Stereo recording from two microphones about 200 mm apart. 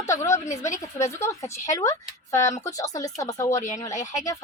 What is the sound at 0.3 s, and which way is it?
Speech, 35° left (ahead or behind).